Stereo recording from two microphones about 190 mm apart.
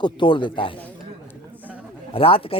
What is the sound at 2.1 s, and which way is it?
Speech, 30° left (ahead or behind).